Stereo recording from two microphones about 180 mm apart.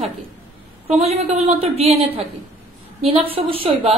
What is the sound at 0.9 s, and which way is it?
A woman's voice, 35° right (ahead or behind).